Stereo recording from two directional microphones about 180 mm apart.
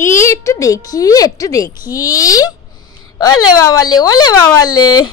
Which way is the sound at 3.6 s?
20° left (ahead or behind).